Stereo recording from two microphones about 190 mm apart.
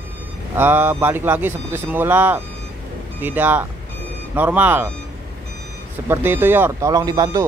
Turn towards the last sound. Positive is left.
turn(degrees=-20)  # may be behind; listen again after turning